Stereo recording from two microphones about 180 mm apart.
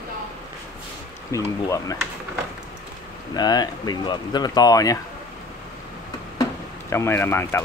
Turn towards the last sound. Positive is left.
turn(degrees=15)  # may be behind; listen again after turning